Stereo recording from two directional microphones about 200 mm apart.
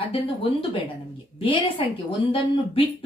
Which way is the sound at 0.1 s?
25° left (ahead or behind).